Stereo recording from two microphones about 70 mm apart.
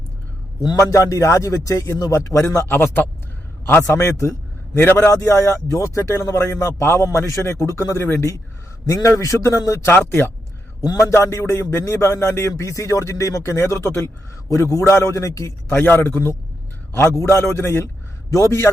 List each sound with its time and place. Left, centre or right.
0.8 s speech: left
2.7 s speech: left
3.8 s speech: left
9.9 s speech: left
11.1 s speech: left
12.6 s speech: left
14.5 s speech: left
15.7 s speech: left
18.3 s speech: left